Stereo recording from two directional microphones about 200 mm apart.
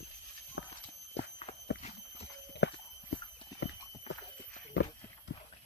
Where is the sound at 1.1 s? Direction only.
30° left (ahead or behind).